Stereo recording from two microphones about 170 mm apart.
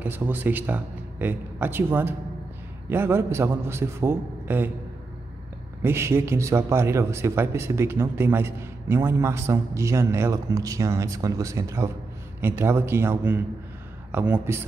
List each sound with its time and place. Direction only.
0.0 s a man's voice: 10° right (ahead or behind)
5.8 s a man's voice: 15° right (ahead or behind)